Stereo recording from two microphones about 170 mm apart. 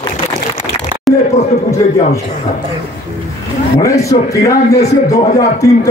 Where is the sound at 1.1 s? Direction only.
Centre (ahead or behind).